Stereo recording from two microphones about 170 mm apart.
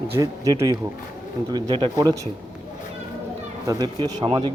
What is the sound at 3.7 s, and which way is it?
Speech, 25° right (ahead or behind).